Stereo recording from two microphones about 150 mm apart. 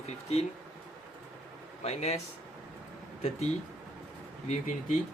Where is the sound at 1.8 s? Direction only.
45° left (ahead or behind).